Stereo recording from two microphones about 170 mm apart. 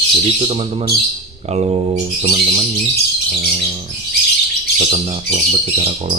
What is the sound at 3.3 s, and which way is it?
Bird, 30° right (ahead or behind).